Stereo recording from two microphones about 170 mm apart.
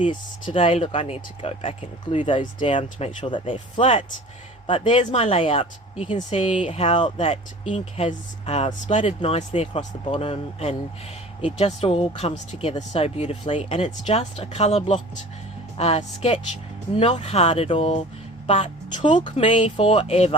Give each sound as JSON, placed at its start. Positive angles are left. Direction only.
{"t": 0.0, "sound": "speech", "side_deg": 30}